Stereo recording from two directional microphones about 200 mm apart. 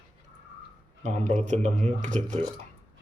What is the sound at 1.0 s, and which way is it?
Speech, 35° right (ahead or behind).